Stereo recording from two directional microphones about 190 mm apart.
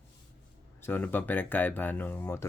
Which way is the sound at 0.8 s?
10° left (ahead or behind).